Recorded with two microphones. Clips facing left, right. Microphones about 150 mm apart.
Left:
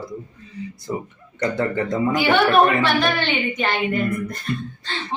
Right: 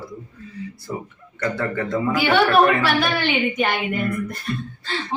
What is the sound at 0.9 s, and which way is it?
Speech, 15° left (ahead or behind).